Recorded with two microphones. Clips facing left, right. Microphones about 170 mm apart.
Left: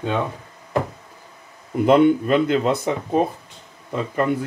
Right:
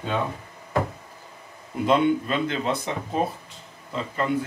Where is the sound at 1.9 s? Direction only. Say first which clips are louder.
Left 6 dB; 55° left (ahead or behind).